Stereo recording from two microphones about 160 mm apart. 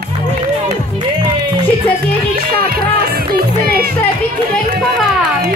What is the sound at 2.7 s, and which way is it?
Music, 70° right (ahead or behind).